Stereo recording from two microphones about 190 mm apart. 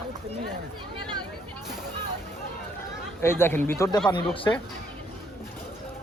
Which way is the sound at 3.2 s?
10° left (ahead or behind).